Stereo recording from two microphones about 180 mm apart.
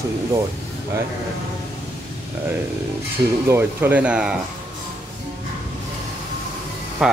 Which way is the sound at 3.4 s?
10° right (ahead or behind).